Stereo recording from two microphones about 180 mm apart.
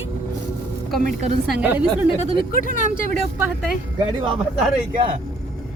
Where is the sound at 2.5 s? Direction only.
45° left (ahead or behind).